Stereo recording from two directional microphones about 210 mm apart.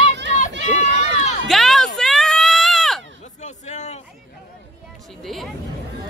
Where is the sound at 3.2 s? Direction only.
35° left (ahead or behind).